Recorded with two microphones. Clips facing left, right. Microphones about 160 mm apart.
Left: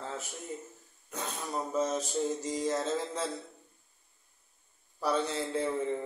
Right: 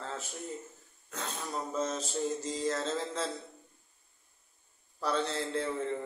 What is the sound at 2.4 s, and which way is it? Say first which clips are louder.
Speech: left 2 dB; 15° left (ahead or behind).